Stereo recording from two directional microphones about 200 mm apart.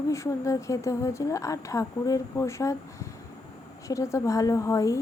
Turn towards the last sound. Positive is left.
turn(degrees=15)  # may be behind; listen again after turning